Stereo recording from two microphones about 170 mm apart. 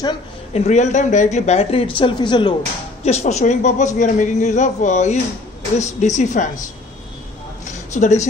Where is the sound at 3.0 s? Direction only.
40° left (ahead or behind).